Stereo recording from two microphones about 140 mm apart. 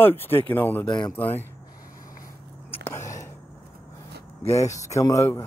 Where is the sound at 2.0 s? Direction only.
85° left.